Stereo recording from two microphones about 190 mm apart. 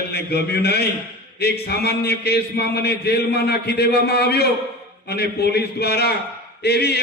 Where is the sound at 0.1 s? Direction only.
55° left (ahead or behind).